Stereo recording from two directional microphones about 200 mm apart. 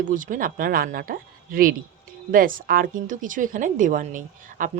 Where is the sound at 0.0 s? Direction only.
40° right (ahead or behind).